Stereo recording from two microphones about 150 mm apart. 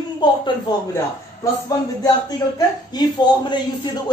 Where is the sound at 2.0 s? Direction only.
25° left (ahead or behind).